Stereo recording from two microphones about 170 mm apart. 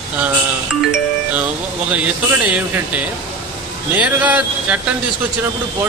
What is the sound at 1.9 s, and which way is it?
Speech, 10° right (ahead or behind).